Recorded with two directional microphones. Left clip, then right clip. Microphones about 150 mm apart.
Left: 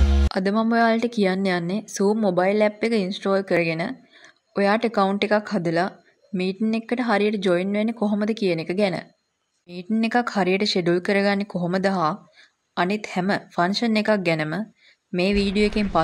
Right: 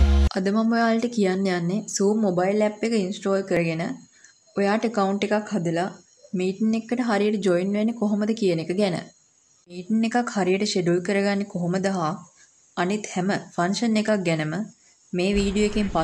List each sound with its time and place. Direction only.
0.3 s speech: 40° left (ahead or behind)